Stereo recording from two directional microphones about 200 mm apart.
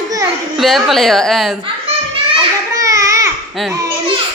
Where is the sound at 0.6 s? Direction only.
Centre (ahead or behind).